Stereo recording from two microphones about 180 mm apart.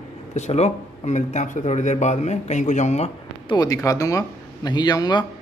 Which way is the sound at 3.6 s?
20° left (ahead or behind).